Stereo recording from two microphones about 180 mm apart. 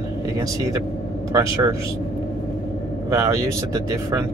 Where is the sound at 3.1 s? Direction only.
15° right (ahead or behind).